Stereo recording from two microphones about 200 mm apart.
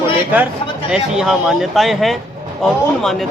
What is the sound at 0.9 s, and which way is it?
Speech, 5° right (ahead or behind).